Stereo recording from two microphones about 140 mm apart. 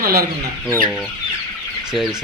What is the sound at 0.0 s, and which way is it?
Speech, 90° right.